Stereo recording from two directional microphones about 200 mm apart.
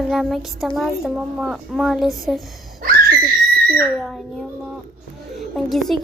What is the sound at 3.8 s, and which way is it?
Speech, centre (ahead or behind).